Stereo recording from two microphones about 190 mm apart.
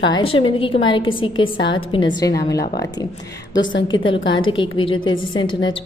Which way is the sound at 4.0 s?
85° left.